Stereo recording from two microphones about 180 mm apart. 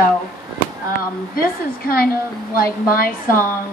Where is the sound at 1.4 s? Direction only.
55° left (ahead or behind).